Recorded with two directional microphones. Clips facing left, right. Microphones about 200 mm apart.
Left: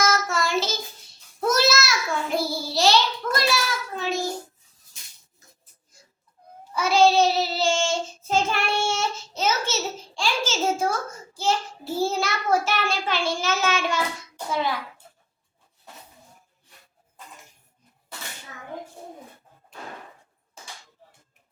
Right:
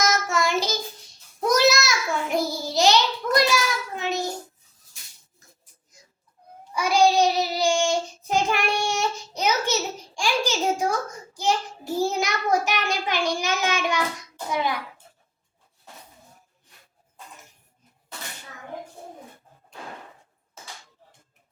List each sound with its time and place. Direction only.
0.1 s child singing: 15° right (ahead or behind)
6.7 s child singing: 15° right (ahead or behind)
10.2 s a sound: 15° right (ahead or behind)
11.3 s child singing: 15° right (ahead or behind)